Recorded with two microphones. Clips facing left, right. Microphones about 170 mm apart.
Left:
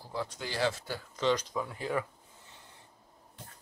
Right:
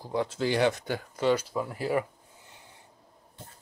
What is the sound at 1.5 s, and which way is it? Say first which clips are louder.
Speech: right 4 dB; 30° right (ahead or behind).